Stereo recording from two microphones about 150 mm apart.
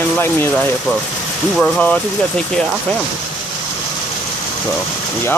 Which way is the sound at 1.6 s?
10° left (ahead or behind).